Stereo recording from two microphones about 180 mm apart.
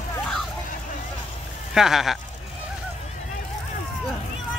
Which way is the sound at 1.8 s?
Centre (ahead or behind).